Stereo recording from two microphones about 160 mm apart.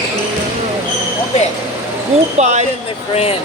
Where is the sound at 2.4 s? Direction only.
45° right (ahead or behind).